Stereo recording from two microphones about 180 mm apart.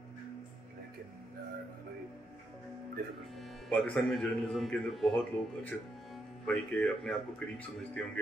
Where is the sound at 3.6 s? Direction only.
Centre (ahead or behind).